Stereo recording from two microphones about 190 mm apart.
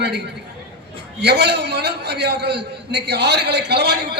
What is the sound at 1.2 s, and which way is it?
A man's voice, 60° right (ahead or behind).